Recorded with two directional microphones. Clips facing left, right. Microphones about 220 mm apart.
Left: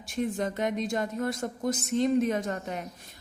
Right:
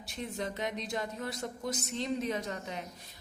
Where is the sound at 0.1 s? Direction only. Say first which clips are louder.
Left 8 dB; 50° left (ahead or behind).